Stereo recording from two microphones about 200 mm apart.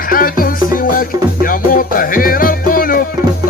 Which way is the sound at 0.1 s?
45° left (ahead or behind).